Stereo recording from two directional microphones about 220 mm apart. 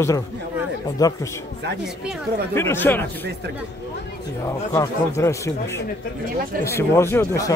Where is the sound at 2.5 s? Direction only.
10° left (ahead or behind).